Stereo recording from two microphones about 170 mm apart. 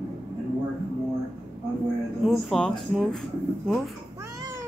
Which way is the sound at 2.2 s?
Centre (ahead or behind).